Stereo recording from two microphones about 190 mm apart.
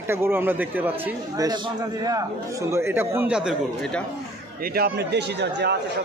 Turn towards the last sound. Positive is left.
turn(degrees=-65)  # may be behind; listen again after turning